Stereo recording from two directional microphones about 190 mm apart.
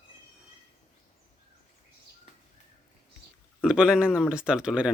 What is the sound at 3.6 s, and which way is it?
Speech, 5° right (ahead or behind).